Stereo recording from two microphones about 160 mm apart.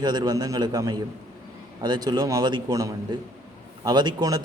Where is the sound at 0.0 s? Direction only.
25° right (ahead or behind).